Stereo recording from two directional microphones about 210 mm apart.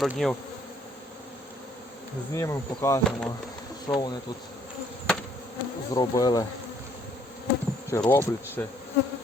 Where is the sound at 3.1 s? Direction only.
5° left (ahead or behind).